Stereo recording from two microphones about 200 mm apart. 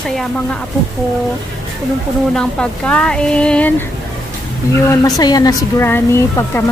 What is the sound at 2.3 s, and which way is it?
Speech, 5° left (ahead or behind).